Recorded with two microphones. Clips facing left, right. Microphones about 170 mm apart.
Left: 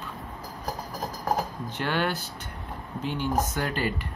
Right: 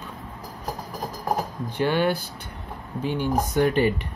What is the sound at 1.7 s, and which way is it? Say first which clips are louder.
Speech: right 7 dB; 15° right (ahead or behind).